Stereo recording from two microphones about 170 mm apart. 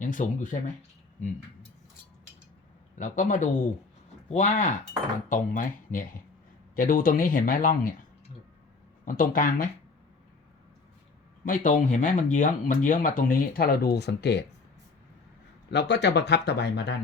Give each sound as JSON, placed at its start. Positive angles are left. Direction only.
{"t": 0.0, "sound": "speech", "side_deg": 50}
{"t": 3.0, "sound": "speech", "side_deg": 50}
{"t": 9.0, "sound": "speech", "side_deg": 55}
{"t": 11.4, "sound": "speech", "side_deg": 50}
{"t": 15.7, "sound": "speech", "side_deg": 90}